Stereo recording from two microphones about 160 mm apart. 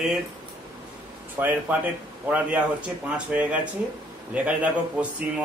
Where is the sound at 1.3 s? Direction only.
10° right (ahead or behind).